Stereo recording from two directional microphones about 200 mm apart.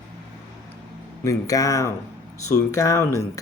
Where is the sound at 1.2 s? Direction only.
15° left (ahead or behind).